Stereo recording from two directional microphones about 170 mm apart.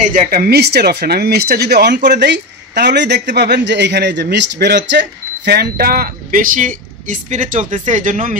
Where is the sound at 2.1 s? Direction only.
85° right.